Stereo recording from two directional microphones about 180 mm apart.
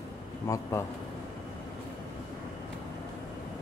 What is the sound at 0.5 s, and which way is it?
Speech, 15° left (ahead or behind).